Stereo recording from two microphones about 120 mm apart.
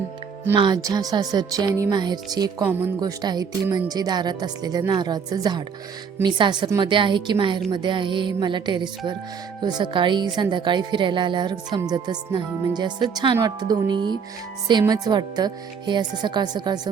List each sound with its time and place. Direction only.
0.5 s speech: 40° right (ahead or behind)
0.8 s speech: 30° right (ahead or behind)
2.6 s speech: 15° right (ahead or behind)
3.0 s speech: 35° right (ahead or behind)